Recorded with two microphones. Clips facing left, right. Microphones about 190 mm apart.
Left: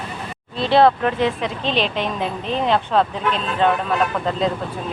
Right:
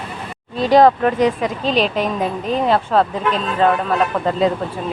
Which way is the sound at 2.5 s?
5° right (ahead or behind).